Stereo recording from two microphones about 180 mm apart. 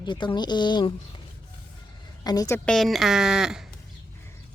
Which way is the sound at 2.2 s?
20° left (ahead or behind).